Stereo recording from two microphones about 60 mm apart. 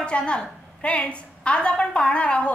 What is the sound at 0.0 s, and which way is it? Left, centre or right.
A woman's voice, centre.